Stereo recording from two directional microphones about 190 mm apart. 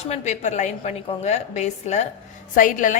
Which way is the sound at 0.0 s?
35° left (ahead or behind).